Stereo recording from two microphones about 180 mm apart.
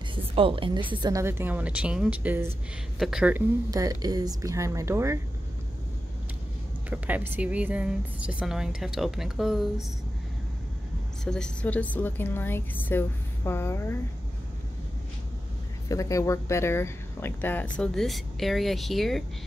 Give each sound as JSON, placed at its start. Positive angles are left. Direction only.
{"t": 0.1, "sound": "a woman's voice", "side_deg": -30}
{"t": 3.7, "sound": "a woman's voice", "side_deg": -20}
{"t": 6.9, "sound": "speech", "side_deg": -10}
{"t": 11.2, "sound": "speech", "side_deg": 5}
{"t": 15.9, "sound": "speech", "side_deg": 20}